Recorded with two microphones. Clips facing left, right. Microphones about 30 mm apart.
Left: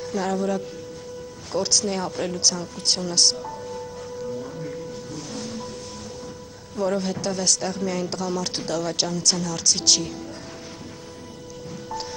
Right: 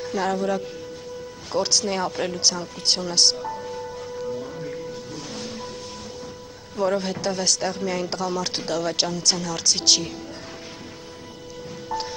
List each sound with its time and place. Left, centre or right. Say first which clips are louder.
0.0 s speech: right 1 dB; centre
4.4 s music: right 1 dB; centre
6.8 s speech: right 1 dB; centre